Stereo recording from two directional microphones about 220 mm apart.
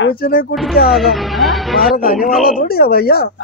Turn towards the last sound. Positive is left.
turn(degrees=45)  # may be behind; listen again after turning